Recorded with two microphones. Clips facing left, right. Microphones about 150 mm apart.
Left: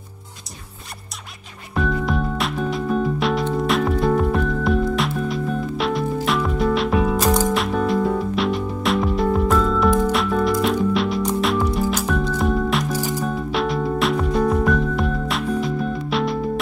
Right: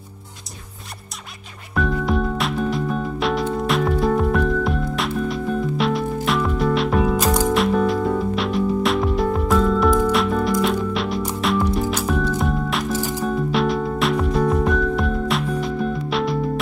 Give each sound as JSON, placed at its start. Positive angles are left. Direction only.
{"t": 1.8, "sound": "music", "side_deg": 0}